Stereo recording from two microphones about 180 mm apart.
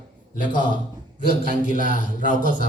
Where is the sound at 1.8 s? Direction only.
45° left (ahead or behind).